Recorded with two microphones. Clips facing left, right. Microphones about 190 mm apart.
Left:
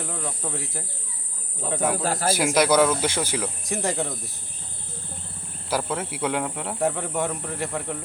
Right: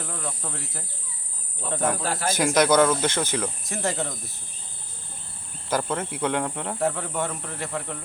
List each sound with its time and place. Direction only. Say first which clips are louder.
0.0 s speech: left 2 dB; 5° left (ahead or behind)
2.0 s a man's voice: left 3 dB; 40° left (ahead or behind)
2.2 s speech: right 1 dB; 10° left (ahead or behind)
5.6 s speech: even; 5° left (ahead or behind)